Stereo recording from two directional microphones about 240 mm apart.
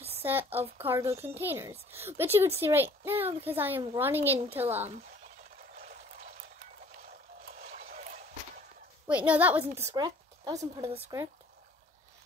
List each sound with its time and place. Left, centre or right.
0.2 s a child's voice: centre
5.8 s pour: right
7.5 s a sound: right
9.0 s a child's voice: centre